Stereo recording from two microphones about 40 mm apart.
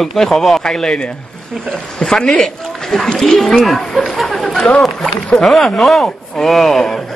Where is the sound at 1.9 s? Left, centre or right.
Centre.